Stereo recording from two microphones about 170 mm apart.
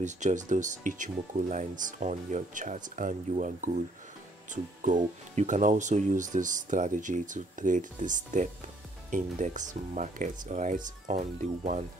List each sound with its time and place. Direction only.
0.0 s speech: 45° right (ahead or behind)